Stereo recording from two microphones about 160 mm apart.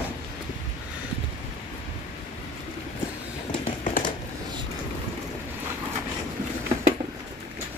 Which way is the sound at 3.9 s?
50° left (ahead or behind).